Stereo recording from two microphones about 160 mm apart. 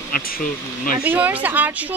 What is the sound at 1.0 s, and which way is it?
Speech, 10° right (ahead or behind).